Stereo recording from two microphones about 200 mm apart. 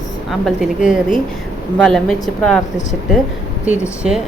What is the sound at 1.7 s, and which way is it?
Speech, centre (ahead or behind).